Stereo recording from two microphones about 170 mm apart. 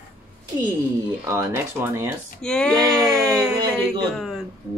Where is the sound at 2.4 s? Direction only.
5° left (ahead or behind).